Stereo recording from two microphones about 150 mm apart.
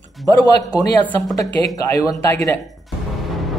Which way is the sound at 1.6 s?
20° left (ahead or behind).